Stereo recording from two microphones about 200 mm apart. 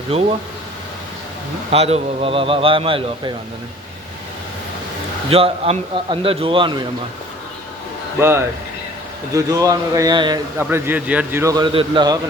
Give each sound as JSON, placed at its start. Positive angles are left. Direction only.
{"t": 0.1, "sound": "speech", "side_deg": -30}
{"t": 1.7, "sound": "speech", "side_deg": -30}
{"t": 5.3, "sound": "speech", "side_deg": -30}
{"t": 8.2, "sound": "a man's voice", "side_deg": -10}